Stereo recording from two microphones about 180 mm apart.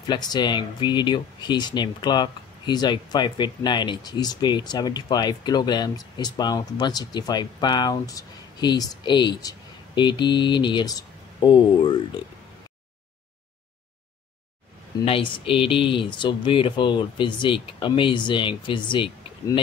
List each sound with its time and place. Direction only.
0.0 s speech: 25° left (ahead or behind)
15.0 s speech: 30° left (ahead or behind)